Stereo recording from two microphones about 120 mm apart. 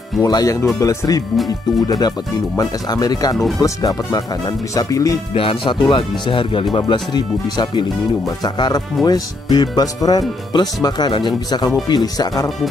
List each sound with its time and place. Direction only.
0.2 s speech: 30° left (ahead or behind)
5.3 s speech: 50° left (ahead or behind)
6.9 s speech: 35° left (ahead or behind)